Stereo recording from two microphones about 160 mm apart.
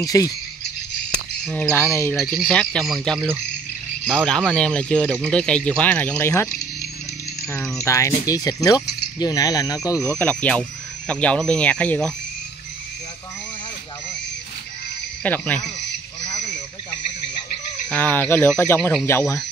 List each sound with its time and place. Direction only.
0.0 s speech: 20° left (ahead or behind)
1.4 s speech: 5° left (ahead or behind)
2.1 s speech: centre (ahead or behind)
7.8 s speech: 20° left (ahead or behind)
15.2 s speech: 10° left (ahead or behind)
17.8 s speech: 10° left (ahead or behind)